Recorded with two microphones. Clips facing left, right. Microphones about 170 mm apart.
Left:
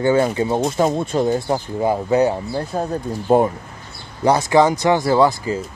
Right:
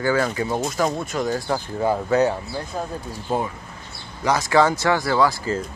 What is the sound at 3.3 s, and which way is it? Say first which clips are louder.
Speech: left 10 dB; 55° left (ahead or behind).